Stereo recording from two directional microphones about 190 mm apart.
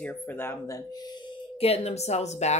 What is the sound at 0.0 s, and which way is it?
Speech, 10° left (ahead or behind).